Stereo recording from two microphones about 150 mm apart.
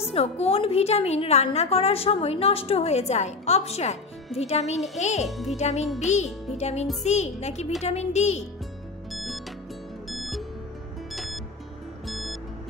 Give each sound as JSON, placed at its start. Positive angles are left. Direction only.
{"t": 0.1, "sound": "a woman's voice", "side_deg": 40}
{"t": 9.1, "sound": "music", "side_deg": 0}